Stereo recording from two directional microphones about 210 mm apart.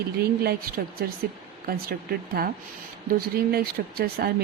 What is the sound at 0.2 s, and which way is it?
Speech, 45° right (ahead or behind).